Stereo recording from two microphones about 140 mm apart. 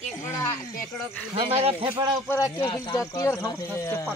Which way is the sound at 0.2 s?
20° left (ahead or behind).